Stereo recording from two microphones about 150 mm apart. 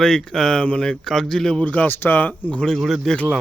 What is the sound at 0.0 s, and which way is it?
Speech, 5° left (ahead or behind).